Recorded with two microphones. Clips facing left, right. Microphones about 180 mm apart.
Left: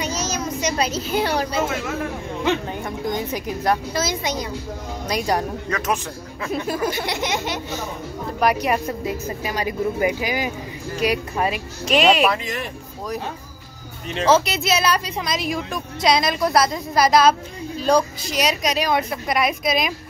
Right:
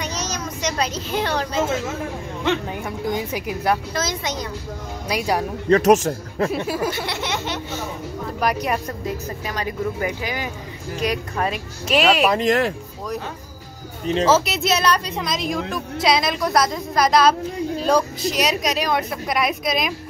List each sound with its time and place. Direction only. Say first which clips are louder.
0.0 s a sound: left 3 dB; 5° left (ahead or behind)
2.7 s speech: even; 5° right (ahead or behind)
3.9 s speech: left 2 dB; 10° left (ahead or behind)
5.0 s speech: even; 5° right (ahead or behind)
5.7 s a man's voice: right 15 dB; 40° right (ahead or behind)
6.5 s a woman's voice: even; 5° right (ahead or behind)
6.9 s speech: left 2 dB; 15° left (ahead or behind)
8.4 s speech: left 3 dB; centre (ahead or behind)
11.9 s a woman's voice: left 1 dB; 5° right (ahead or behind)
12.4 s speech: right 10 dB; 90° right
14.2 s a woman's voice: left 2 dB; centre (ahead or behind)